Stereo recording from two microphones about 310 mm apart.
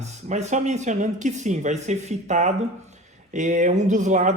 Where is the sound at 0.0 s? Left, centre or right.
Right.